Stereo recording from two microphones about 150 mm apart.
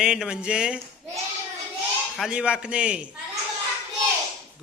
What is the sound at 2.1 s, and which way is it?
A man's voice, 5° right (ahead or behind).